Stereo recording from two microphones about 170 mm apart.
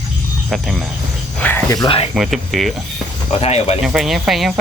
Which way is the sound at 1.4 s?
10° left (ahead or behind).